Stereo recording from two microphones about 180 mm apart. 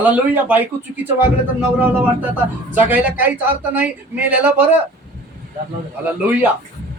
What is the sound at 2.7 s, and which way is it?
A man's voice, 10° right (ahead or behind).